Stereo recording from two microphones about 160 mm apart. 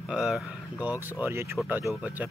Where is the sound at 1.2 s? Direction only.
15° right (ahead or behind).